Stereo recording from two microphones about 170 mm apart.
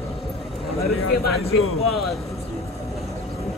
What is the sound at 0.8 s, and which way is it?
Speech, 65° left (ahead or behind).